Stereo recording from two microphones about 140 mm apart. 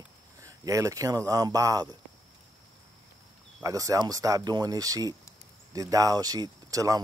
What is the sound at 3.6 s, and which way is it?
Speech, 25° right (ahead or behind).